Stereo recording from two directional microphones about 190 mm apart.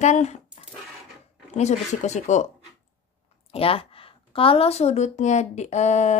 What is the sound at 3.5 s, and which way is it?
Speech, 30° left (ahead or behind).